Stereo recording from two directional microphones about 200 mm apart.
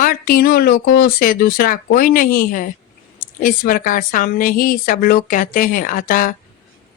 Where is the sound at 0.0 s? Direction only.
45° left (ahead or behind).